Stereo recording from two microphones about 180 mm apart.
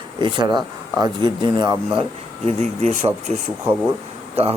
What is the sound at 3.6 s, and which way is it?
Speech, 15° right (ahead or behind).